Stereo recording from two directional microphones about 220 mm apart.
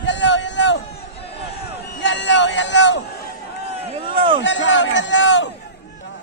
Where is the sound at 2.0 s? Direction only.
55° left (ahead or behind).